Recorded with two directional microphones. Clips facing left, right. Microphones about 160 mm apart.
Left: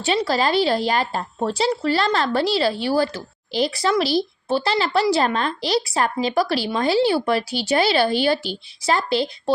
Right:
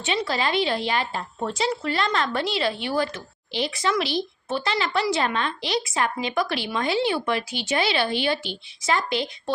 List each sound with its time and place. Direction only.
0.0 s speech: 40° left (ahead or behind)